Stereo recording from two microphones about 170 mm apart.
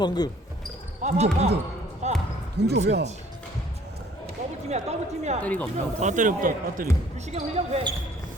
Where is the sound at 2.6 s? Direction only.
80° right.